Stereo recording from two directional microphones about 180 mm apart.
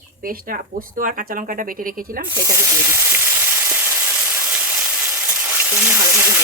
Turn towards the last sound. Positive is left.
turn(degrees=-15)  # may be behind; listen again after turning